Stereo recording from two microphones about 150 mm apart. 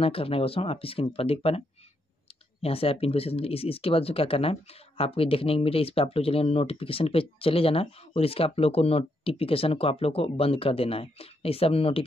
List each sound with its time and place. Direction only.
0.0 s speech: 40° left (ahead or behind)
2.6 s speech: 40° left (ahead or behind)